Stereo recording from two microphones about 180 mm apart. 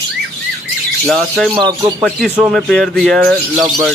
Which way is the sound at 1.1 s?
Centre (ahead or behind).